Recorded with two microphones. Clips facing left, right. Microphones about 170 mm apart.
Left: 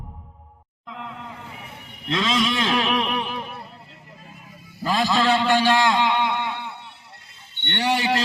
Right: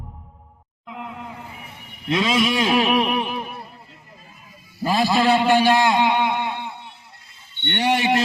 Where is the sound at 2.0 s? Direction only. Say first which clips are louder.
Right 3 dB; 10° right (ahead or behind).